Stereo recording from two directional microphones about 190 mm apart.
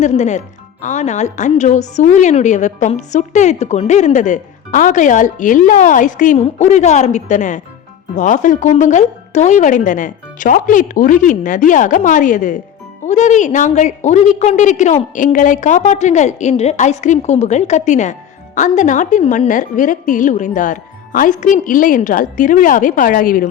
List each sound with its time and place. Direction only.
0.0 s a woman's voice: 40° left (ahead or behind)